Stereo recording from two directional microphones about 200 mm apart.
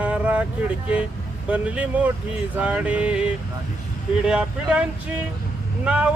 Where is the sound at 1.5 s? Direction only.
5° right (ahead or behind).